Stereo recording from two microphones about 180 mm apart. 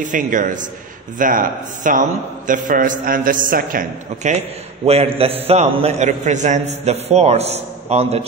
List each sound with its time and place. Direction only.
0.0 s a man's voice: 45° right (ahead or behind)